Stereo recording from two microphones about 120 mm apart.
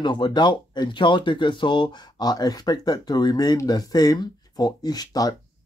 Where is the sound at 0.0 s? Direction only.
40° left (ahead or behind).